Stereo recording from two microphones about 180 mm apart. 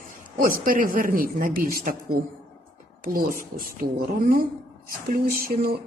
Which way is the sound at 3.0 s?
55° right (ahead or behind).